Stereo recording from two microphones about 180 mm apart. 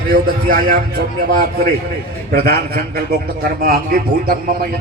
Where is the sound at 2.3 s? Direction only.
55° right (ahead or behind).